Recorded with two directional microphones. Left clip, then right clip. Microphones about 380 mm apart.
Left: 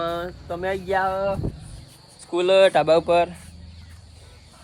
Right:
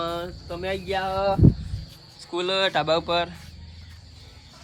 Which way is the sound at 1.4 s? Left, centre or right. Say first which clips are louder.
Right 11 dB; right.